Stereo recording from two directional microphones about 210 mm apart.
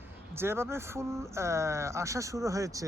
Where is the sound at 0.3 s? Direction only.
10° right (ahead or behind).